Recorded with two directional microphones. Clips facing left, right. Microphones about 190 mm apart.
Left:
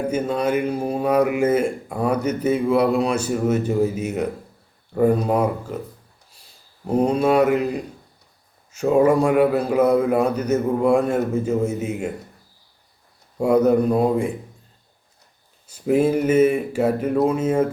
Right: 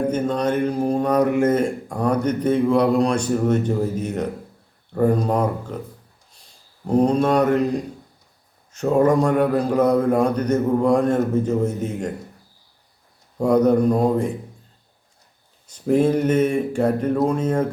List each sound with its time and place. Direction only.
0.1 s a man's voice: 10° left (ahead or behind)
6.8 s a man's voice: 5° left (ahead or behind)
13.4 s a man's voice: 10° left (ahead or behind)
15.6 s a man's voice: 5° left (ahead or behind)